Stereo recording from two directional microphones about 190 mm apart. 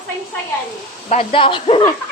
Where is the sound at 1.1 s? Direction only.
30° left (ahead or behind).